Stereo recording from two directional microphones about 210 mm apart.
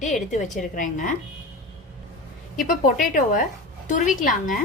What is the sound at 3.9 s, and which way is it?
Speech, 40° left (ahead or behind).